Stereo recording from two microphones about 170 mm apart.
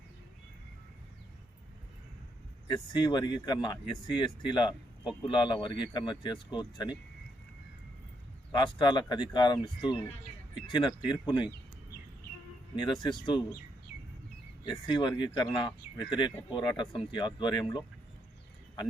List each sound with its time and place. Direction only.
2.7 s speech: 25° left (ahead or behind)
8.5 s speech: 25° left (ahead or behind)
12.7 s speech: 25° left (ahead or behind)
14.6 s speech: 25° left (ahead or behind)